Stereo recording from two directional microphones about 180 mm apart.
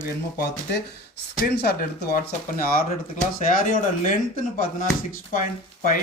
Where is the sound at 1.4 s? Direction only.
55° left (ahead or behind).